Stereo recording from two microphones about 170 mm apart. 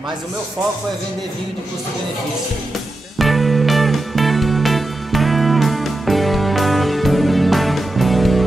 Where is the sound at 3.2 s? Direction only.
Centre (ahead or behind).